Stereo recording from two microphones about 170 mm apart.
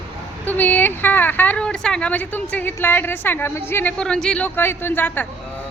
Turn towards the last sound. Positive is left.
turn(degrees=10)  # may be behind; listen again after turning